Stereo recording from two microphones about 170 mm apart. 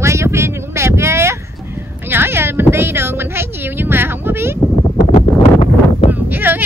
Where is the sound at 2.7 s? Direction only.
15° right (ahead or behind).